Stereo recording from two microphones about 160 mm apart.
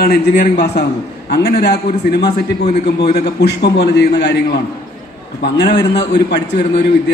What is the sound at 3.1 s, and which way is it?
Speech, 90° left.